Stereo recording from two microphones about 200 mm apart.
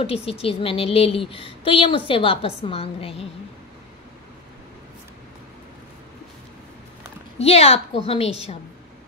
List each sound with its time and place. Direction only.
0.0 s speech: 30° left (ahead or behind)
7.4 s a woman's voice: 30° left (ahead or behind)